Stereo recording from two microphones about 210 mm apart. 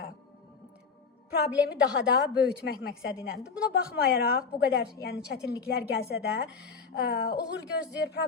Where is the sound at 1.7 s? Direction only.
50° left (ahead or behind).